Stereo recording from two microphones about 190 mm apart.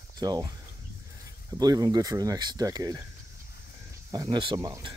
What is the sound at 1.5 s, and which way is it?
Speech, 20° right (ahead or behind).